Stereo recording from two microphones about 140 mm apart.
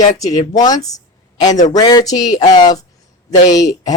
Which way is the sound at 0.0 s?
60° left (ahead or behind).